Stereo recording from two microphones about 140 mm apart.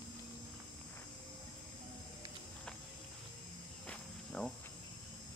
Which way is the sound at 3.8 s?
5° left (ahead or behind).